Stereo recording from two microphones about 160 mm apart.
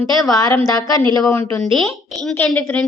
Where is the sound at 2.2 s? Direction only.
5° left (ahead or behind).